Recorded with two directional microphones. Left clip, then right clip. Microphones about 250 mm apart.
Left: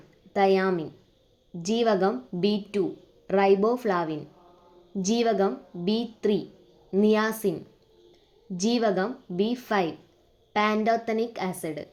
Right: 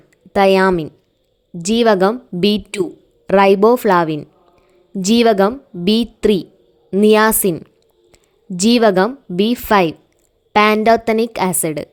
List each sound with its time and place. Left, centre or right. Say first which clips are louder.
0.3 s a woman's voice: right 11 dB; right